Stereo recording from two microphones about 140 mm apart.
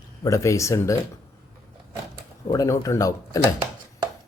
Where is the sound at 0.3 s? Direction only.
20° left (ahead or behind).